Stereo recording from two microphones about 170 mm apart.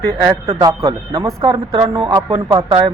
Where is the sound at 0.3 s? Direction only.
20° right (ahead or behind).